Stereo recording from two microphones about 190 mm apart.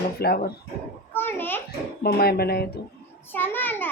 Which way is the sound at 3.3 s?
10° left (ahead or behind).